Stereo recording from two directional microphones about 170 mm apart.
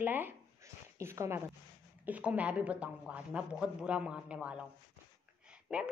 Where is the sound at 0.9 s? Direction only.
15° right (ahead or behind).